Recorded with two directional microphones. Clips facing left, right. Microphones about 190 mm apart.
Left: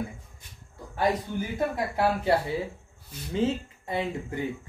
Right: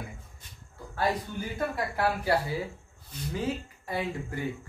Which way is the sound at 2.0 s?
25° left (ahead or behind).